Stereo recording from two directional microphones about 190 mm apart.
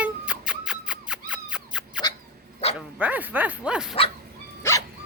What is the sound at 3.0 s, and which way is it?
Speech, 10° right (ahead or behind).